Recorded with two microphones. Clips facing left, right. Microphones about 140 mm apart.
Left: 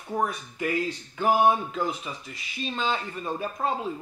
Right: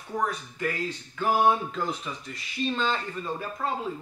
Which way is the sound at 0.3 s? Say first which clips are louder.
Left 2 dB; 15° left (ahead or behind).